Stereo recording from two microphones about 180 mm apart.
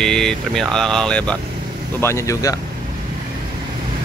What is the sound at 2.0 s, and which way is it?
Speech, 15° left (ahead or behind).